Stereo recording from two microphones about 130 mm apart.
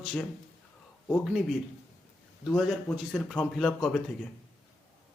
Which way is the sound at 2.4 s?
Centre (ahead or behind).